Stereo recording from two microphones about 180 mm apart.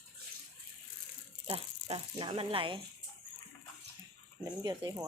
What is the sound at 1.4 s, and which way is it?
Speech, 30° right (ahead or behind).